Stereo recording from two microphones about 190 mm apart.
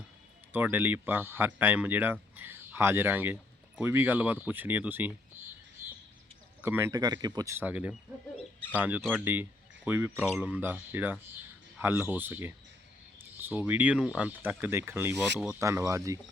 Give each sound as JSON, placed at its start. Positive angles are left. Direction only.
{"t": 0.5, "sound": "speech", "side_deg": -10}
{"t": 6.6, "sound": "speech", "side_deg": -10}